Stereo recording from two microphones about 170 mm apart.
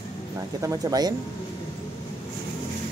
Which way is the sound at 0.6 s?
20° right (ahead or behind).